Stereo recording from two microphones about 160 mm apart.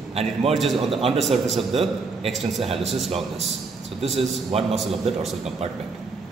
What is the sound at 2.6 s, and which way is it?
Speech, 40° right (ahead or behind).